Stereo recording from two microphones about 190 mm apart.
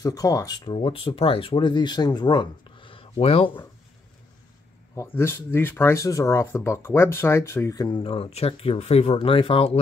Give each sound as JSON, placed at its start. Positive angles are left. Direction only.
{"t": 0.0, "sound": "speech", "side_deg": 20}
{"t": 4.9, "sound": "speech", "side_deg": 10}